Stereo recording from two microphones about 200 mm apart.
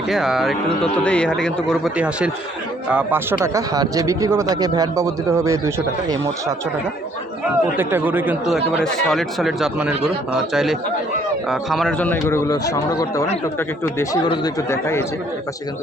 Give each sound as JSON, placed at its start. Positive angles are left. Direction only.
{"t": 0.1, "sound": "speech", "side_deg": 0}
{"t": 7.8, "sound": "speech", "side_deg": -10}